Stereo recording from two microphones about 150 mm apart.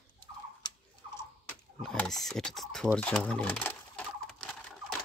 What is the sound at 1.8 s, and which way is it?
Speech, 5° left (ahead or behind).